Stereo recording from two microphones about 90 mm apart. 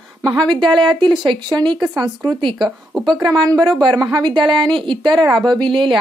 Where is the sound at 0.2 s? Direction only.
45° right (ahead or behind).